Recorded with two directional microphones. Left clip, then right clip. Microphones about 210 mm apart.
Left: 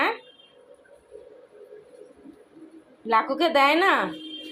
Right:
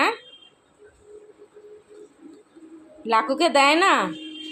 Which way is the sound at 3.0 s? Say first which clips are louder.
Right 2 dB; 15° right (ahead or behind).